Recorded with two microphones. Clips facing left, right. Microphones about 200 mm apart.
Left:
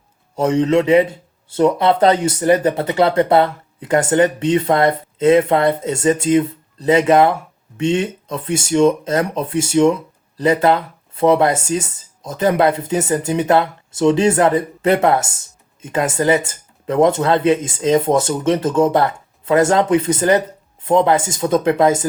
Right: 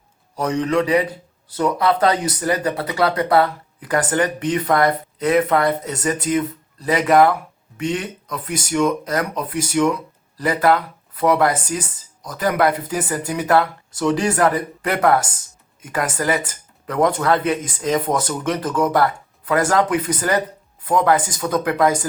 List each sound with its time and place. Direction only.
0.3 s speech: 25° left (ahead or behind)